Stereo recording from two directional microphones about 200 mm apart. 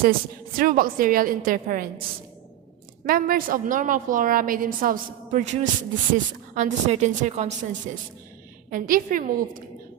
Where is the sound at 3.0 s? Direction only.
45° right (ahead or behind).